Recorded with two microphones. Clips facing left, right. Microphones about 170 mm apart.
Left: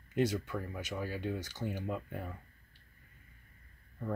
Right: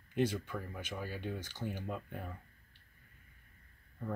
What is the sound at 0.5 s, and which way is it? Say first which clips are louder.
Speech: left 3 dB; 5° left (ahead or behind).